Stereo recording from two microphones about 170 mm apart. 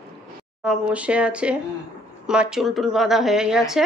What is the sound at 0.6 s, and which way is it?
Speech, 5° right (ahead or behind).